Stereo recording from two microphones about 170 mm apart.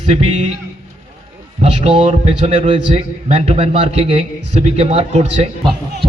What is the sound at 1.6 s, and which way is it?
A man's voice, 35° right (ahead or behind).